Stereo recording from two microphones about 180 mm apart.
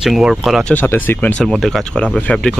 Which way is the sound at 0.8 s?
10° left (ahead or behind).